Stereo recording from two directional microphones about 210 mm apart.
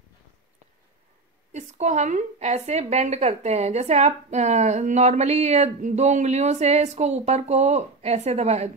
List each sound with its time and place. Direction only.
1.5 s a woman's voice: 35° right (ahead or behind)